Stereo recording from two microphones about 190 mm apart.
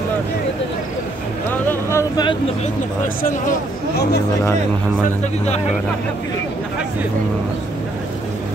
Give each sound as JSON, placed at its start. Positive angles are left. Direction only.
{"t": 1.7, "sound": "vehicle", "side_deg": 15}
{"t": 3.2, "sound": "speech", "side_deg": 45}
{"t": 5.0, "sound": "speech", "side_deg": 35}